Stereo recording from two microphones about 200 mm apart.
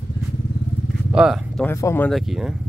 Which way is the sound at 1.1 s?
5° right (ahead or behind).